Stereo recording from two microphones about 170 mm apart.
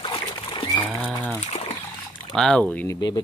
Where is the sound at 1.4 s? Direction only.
35° left (ahead or behind).